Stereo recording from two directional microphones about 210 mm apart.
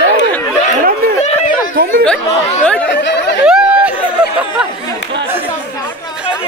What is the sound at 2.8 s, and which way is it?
Chatter, 55° left (ahead or behind).